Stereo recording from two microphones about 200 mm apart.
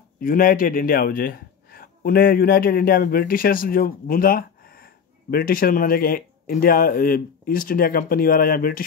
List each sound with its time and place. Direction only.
0.2 s a man's voice: 45° left (ahead or behind)